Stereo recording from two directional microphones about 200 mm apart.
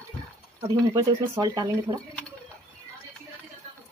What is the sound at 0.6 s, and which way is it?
Speech, 20° right (ahead or behind).